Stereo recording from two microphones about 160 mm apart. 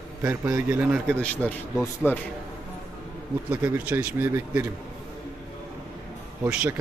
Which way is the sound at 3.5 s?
10° right (ahead or behind).